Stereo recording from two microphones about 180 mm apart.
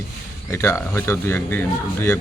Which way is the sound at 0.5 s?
15° left (ahead or behind).